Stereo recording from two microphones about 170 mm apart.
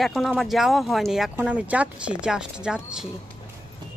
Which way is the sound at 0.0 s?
Centre (ahead or behind).